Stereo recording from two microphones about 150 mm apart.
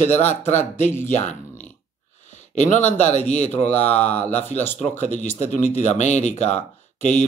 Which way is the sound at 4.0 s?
10° left (ahead or behind).